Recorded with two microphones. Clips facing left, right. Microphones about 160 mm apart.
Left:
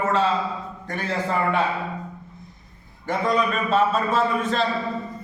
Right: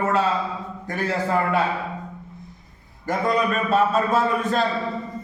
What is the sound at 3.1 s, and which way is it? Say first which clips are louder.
Speech: right 1 dB; 10° right (ahead or behind).